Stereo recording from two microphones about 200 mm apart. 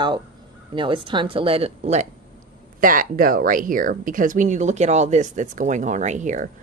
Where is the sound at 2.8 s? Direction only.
45° right (ahead or behind).